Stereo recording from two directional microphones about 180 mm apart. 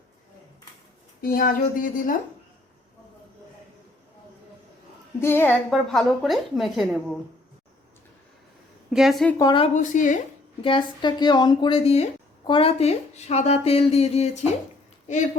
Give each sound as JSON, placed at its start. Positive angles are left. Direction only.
{"t": 1.2, "sound": "speech", "side_deg": 50}
{"t": 5.2, "sound": "a woman's voice", "side_deg": 10}
{"t": 5.7, "sound": "a woman's voice", "side_deg": 0}
{"t": 8.9, "sound": "a woman's voice", "side_deg": 0}
{"t": 9.4, "sound": "speech", "side_deg": 25}
{"t": 9.7, "sound": "speech", "side_deg": 45}
{"t": 10.6, "sound": "speech", "side_deg": 30}